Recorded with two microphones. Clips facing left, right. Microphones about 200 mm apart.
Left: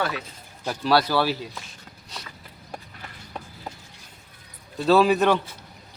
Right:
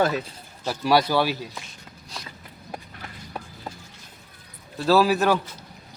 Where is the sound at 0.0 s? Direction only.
40° right (ahead or behind).